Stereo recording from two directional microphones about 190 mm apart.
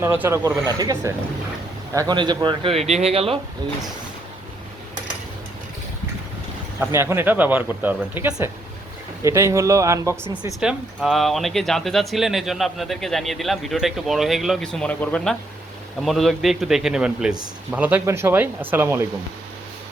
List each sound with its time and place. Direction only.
0.0 s speech: 10° right (ahead or behind); by 3.3 s 30° right (ahead or behind)
6.7 s speech: 15° right (ahead or behind)
10.6 s speech: 5° right (ahead or behind)